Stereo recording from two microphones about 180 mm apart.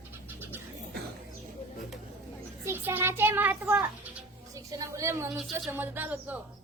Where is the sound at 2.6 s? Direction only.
10° right (ahead or behind).